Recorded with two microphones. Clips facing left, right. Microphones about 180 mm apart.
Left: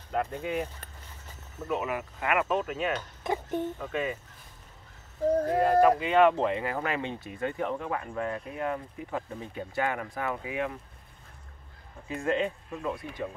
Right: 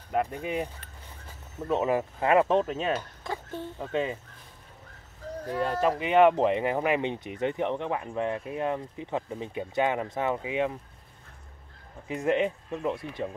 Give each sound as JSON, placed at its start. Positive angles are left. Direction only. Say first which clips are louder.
{"t": 0.1, "sound": "speech", "louder": "right 2 dB", "side_deg": -15}
{"t": 1.7, "sound": "speech", "louder": "right 5 dB", "side_deg": -30}
{"t": 3.3, "sound": "speech", "louder": "left 7 dB", "side_deg": 15}
{"t": 3.9, "sound": "speech", "louder": "right 5 dB", "side_deg": -25}
{"t": 5.8, "sound": "speech", "louder": "right 1 dB", "side_deg": -20}
{"t": 12.1, "sound": "speech", "louder": "right 3 dB", "side_deg": -20}